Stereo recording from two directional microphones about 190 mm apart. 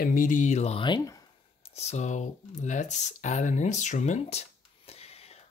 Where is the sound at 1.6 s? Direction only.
35° left (ahead or behind).